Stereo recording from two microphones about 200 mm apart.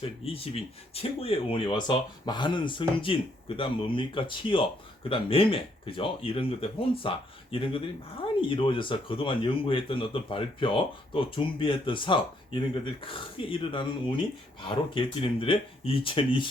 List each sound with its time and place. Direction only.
0.0 s speech: 30° left (ahead or behind)